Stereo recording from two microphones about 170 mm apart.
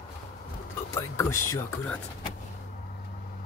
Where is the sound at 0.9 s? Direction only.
15° left (ahead or behind).